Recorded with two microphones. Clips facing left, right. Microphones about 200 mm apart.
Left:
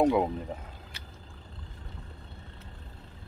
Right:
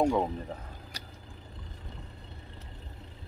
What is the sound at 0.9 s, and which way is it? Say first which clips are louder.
Vehicle: right 3 dB; 40° right (ahead or behind).